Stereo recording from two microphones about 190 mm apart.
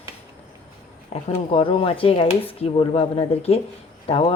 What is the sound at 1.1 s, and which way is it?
A woman's voice, 30° left (ahead or behind).